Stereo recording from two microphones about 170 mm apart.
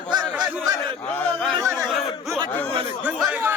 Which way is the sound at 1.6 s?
15° right (ahead or behind).